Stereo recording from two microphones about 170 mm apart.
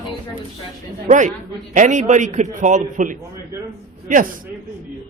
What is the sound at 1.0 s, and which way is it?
Speech, 45° right (ahead or behind).